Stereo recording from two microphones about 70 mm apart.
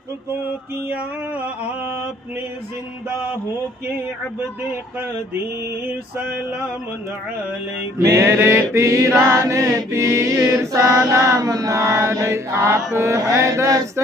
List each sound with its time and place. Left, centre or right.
8.2 s mantra: right
8.7 s mantra: right